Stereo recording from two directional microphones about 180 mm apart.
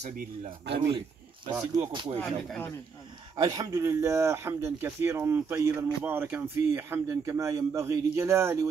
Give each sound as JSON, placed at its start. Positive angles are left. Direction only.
{"t": 0.0, "sound": "speech", "side_deg": -40}
{"t": 0.8, "sound": "speech", "side_deg": -25}
{"t": 3.3, "sound": "speech", "side_deg": -20}